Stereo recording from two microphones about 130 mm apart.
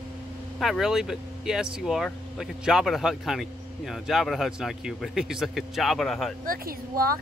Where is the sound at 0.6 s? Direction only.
5° right (ahead or behind).